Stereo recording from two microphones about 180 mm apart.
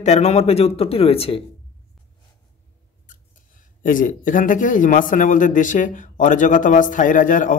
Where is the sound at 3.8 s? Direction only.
50° left (ahead or behind).